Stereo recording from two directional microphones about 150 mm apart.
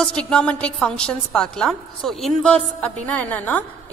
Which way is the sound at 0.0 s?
5° left (ahead or behind).